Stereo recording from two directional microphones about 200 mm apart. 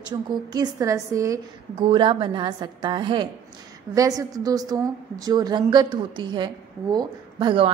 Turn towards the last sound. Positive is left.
turn(degrees=-25)  # may be behind; listen again after turning